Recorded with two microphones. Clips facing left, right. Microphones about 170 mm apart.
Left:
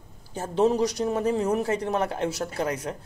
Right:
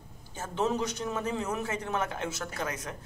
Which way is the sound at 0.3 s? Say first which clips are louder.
Left 8 dB; 35° left (ahead or behind).